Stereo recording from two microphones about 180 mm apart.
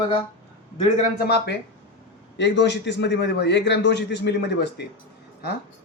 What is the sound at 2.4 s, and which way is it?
A man's voice, 70° left (ahead or behind).